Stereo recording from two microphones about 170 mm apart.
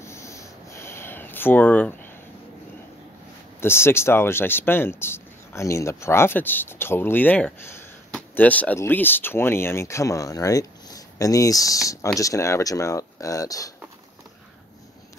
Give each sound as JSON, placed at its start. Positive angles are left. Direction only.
{"t": 0.0, "sound": "sniff", "side_deg": 15}
{"t": 3.6, "sound": "speech", "side_deg": 15}